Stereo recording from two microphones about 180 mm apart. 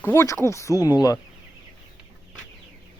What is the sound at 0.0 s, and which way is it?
Speech, 15° left (ahead or behind).